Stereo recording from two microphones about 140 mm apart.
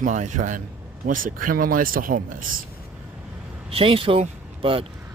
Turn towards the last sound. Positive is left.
turn(degrees=-40)  # may be behind; listen again after turning